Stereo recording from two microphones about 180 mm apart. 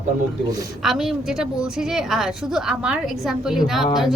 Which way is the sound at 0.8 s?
Centre (ahead or behind).